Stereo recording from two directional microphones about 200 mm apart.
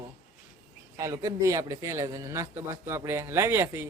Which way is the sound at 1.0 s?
15° right (ahead or behind).